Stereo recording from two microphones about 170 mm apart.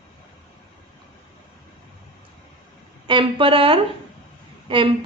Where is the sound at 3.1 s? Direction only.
30° right (ahead or behind).